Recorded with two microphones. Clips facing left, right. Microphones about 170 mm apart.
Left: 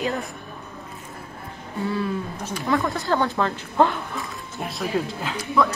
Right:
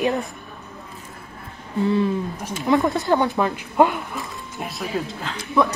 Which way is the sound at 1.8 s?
20° right (ahead or behind).